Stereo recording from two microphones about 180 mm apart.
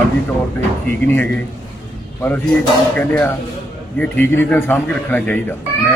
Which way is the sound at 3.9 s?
10° left (ahead or behind).